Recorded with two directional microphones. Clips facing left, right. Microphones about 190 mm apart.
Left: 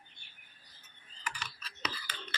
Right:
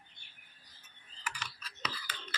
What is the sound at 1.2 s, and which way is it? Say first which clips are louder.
Computer keyboard: left 1 dB; 10° right (ahead or behind).